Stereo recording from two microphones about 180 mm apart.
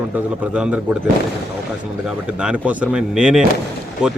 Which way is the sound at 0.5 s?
5° right (ahead or behind).